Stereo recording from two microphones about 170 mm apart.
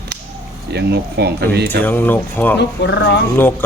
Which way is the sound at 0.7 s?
75° right (ahead or behind).